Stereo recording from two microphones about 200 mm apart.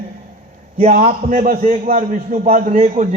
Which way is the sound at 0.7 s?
35° right (ahead or behind).